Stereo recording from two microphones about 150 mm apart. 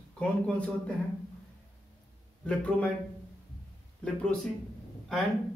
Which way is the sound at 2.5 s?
5° left (ahead or behind).